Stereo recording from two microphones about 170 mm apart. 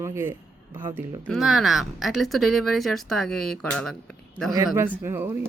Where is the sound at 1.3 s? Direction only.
Centre (ahead or behind).